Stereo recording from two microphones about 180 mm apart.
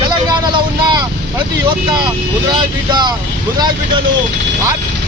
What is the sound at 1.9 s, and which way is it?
Speech, 25° right (ahead or behind).